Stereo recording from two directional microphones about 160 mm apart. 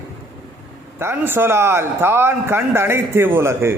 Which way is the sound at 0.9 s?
15° right (ahead or behind).